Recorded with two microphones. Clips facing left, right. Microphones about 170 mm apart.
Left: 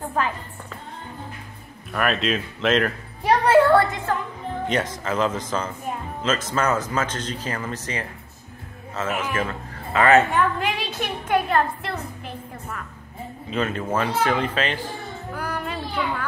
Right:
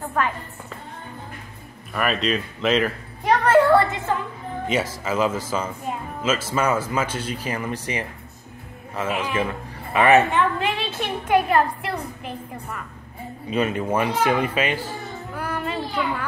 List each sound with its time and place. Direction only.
1.9 s speech: centre (ahead or behind)
3.4 s a sound: 5° left (ahead or behind)
4.6 s a man's voice: 5° right (ahead or behind)
10.3 s a woman's voice: centre (ahead or behind)
15.3 s child singing: 5° right (ahead or behind)